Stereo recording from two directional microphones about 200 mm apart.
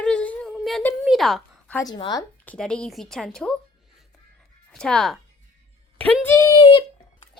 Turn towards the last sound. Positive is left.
turn(degrees=25)  # may be behind; listen again after turning